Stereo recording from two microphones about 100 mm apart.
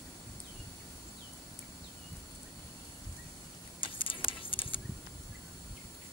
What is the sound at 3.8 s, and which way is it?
Vehicle, 55° left (ahead or behind).